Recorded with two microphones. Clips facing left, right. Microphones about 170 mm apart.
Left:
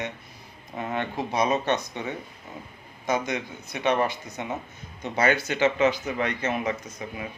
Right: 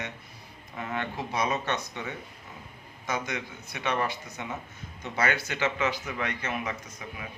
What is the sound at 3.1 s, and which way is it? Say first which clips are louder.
Speech: left 6 dB; 20° left (ahead or behind).